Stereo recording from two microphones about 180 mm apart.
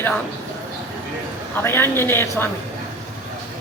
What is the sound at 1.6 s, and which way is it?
Speech, 10° left (ahead or behind).